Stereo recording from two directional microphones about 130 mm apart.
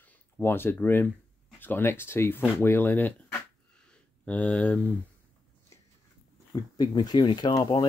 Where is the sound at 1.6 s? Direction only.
15° left (ahead or behind).